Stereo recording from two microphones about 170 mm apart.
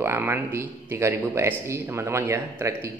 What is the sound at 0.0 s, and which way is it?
A man's voice, 15° right (ahead or behind).